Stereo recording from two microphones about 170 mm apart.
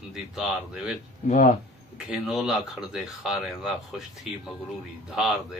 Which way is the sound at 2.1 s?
Centre (ahead or behind).